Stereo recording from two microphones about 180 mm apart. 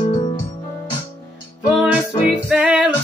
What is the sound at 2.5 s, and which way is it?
Music, 5° right (ahead or behind).